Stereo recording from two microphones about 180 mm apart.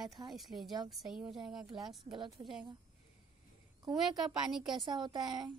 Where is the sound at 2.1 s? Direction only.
25° right (ahead or behind).